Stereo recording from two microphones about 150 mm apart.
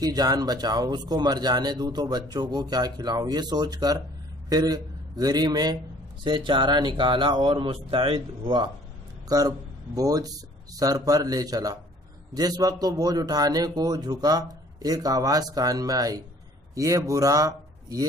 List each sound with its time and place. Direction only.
0.0 s speech: 25° right (ahead or behind)
9.3 s speech: 25° right (ahead or behind)